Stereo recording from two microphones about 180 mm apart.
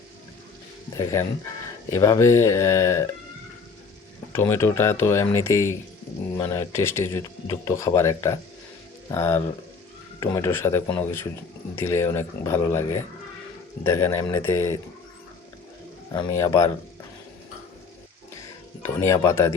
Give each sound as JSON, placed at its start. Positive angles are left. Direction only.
{"t": 0.9, "sound": "speech", "side_deg": 15}
{"t": 4.3, "sound": "speech", "side_deg": 15}
{"t": 16.1, "sound": "speech", "side_deg": 20}
{"t": 18.8, "sound": "speech", "side_deg": 15}